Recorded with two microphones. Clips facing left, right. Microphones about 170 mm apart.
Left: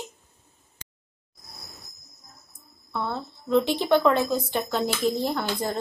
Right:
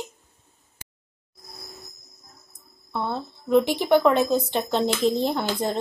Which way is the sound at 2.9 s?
20° right (ahead or behind).